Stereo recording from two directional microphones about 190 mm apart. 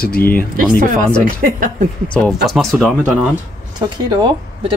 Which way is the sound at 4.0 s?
25° right (ahead or behind).